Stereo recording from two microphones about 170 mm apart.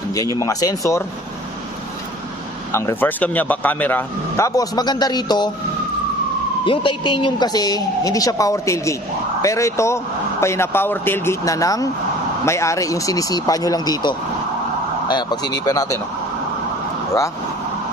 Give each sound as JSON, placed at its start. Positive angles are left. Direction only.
{"t": 0.4, "sound": "a woman's voice", "side_deg": 20}
{"t": 2.7, "sound": "a man's voice", "side_deg": 15}
{"t": 6.6, "sound": "a woman's voice", "side_deg": 30}